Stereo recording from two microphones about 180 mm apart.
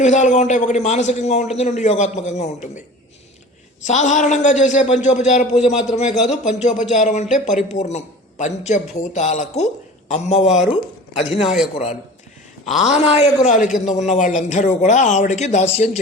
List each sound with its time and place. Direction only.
0.0 s speech: 40° left (ahead or behind)
3.8 s speech: 40° left (ahead or behind)
11.3 s a man's voice: centre (ahead or behind)
12.9 s speech: 35° left (ahead or behind)